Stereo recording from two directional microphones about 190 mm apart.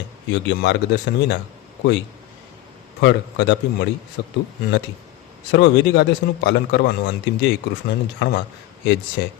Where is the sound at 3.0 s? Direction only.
70° left (ahead or behind).